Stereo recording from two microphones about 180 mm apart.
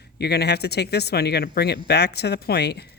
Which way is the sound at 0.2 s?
65° left (ahead or behind).